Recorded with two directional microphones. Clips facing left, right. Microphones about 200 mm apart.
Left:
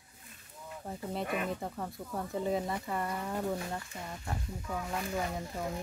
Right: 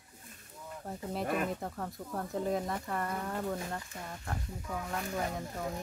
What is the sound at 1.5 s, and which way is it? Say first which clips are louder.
Speech: left 1 dB; centre (ahead or behind).